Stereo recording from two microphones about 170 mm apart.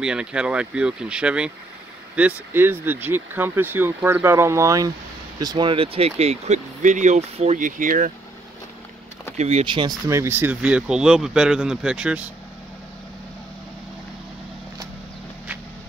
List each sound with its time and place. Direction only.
0.0 s speech: 5° right (ahead or behind); by 8.1 s 50° right (ahead or behind)
9.4 s speech: 40° right (ahead or behind)
10.0 s speech: 15° right (ahead or behind)